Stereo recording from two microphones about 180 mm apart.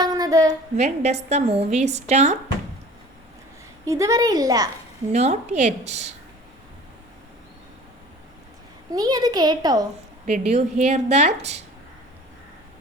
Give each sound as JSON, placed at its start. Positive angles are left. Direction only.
{"t": 0.0, "sound": "a sound", "side_deg": -20}
{"t": 0.8, "sound": "a woman's voice", "side_deg": -40}
{"t": 3.8, "sound": "a child's voice", "side_deg": -15}
{"t": 5.1, "sound": "a woman's voice", "side_deg": -40}
{"t": 8.9, "sound": "a child's voice", "side_deg": -20}
{"t": 10.4, "sound": "a woman's voice", "side_deg": -40}